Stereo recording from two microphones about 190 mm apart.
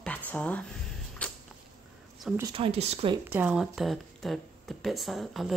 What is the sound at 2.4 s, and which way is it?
Speech, 30° right (ahead or behind).